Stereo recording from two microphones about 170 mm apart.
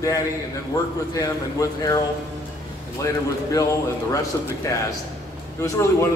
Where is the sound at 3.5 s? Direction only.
20° left (ahead or behind).